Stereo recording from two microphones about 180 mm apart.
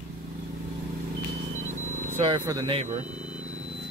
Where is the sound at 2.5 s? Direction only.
20° right (ahead or behind).